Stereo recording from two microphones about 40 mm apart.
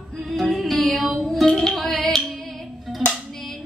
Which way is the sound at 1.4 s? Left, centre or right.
Centre.